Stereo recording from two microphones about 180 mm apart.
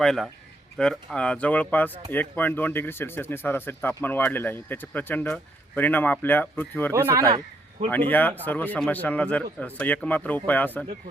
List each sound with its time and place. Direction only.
0.0 s a man's voice: centre (ahead or behind)
6.9 s speech: 15° right (ahead or behind)
7.9 s speech: 10° left (ahead or behind)